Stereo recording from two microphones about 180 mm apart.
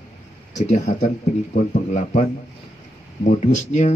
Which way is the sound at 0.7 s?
40° left (ahead or behind).